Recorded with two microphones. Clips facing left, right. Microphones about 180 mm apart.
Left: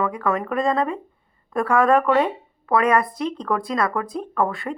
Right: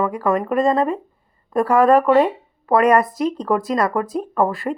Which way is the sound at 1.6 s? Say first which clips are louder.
Right 4 dB; 35° right (ahead or behind).